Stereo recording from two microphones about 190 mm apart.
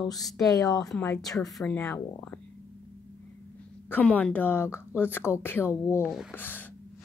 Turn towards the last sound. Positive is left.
turn(degrees=10)  # may be behind; listen again after turning